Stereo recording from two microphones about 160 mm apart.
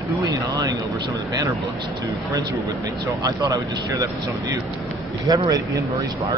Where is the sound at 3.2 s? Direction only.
25° right (ahead or behind).